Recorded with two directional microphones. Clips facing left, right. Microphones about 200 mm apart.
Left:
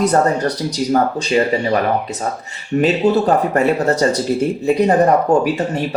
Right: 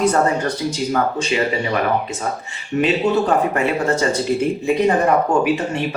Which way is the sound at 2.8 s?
40° left (ahead or behind).